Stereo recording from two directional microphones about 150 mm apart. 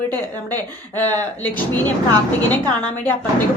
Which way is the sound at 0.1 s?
15° left (ahead or behind).